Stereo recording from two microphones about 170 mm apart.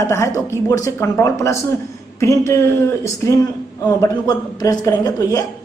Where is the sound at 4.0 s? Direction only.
20° left (ahead or behind).